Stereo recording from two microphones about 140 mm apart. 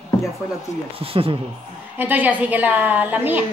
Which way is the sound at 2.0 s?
10° right (ahead or behind).